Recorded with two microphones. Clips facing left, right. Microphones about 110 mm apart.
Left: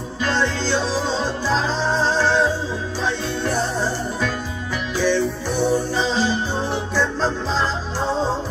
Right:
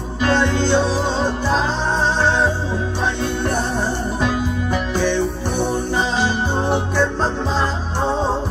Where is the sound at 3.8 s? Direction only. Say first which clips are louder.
Right 2 dB; 15° right (ahead or behind).